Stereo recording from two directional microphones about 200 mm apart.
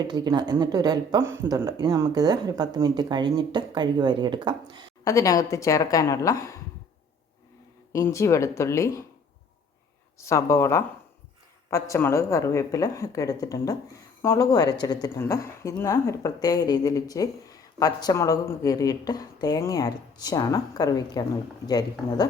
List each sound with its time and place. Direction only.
0.1 s speech: 20° right (ahead or behind)
5.0 s a woman's voice: 15° left (ahead or behind)
7.9 s a woman's voice: 15° left (ahead or behind)
10.2 s a woman's voice: 15° left (ahead or behind)